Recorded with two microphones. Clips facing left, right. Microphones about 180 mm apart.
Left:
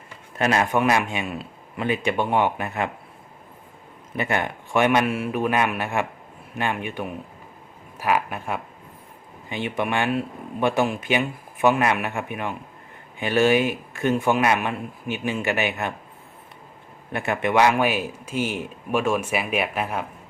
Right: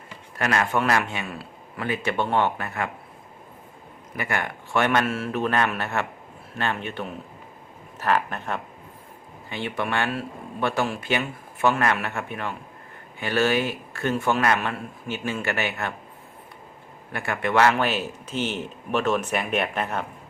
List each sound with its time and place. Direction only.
0.3 s speech: 20° left (ahead or behind)
4.1 s speech: 20° left (ahead or behind)
17.1 s speech: 20° left (ahead or behind)